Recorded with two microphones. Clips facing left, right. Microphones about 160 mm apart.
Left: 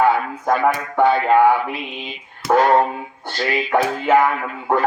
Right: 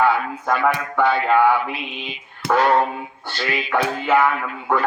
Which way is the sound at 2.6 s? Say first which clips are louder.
Left 2 dB; 40° left (ahead or behind).